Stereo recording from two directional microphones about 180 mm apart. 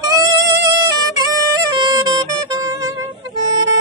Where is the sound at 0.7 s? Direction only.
20° right (ahead or behind).